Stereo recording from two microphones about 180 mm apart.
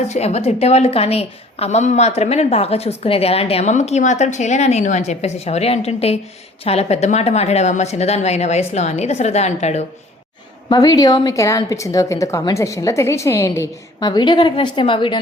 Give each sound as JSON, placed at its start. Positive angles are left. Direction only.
{"t": 0.1, "sound": "a woman's voice", "side_deg": 35}
{"t": 10.7, "sound": "a woman's voice", "side_deg": 20}